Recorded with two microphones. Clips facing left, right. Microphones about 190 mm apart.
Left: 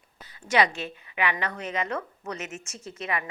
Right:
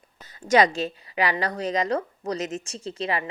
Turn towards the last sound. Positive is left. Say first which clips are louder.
# right 4 dB
turn(degrees=-30)  # may be behind; listen again after turning